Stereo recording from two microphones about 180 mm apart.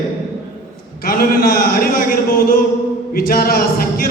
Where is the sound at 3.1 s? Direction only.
55° left (ahead or behind).